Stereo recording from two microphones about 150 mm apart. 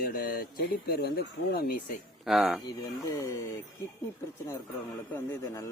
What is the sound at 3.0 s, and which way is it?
Speech, 20° left (ahead or behind).